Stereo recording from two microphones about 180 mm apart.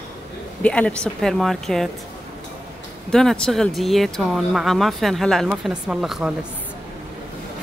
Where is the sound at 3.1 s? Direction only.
5° left (ahead or behind).